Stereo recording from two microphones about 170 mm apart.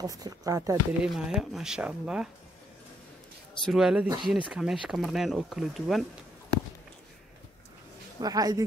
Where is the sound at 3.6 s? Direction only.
5° right (ahead or behind).